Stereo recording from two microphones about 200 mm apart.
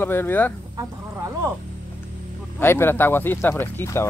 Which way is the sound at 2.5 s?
10° left (ahead or behind).